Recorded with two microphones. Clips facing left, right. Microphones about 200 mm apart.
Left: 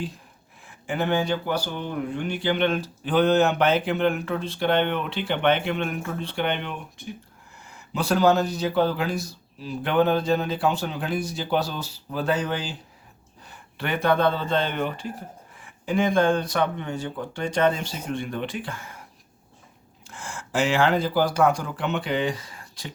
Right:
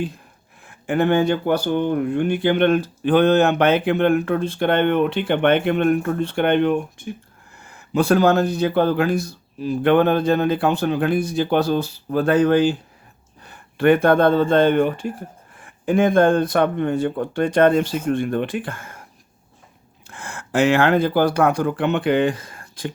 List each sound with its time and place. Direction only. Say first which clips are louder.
0.6 s speech: right 7 dB; 55° right (ahead or behind)
20.1 s speech: right 4 dB; 60° right (ahead or behind)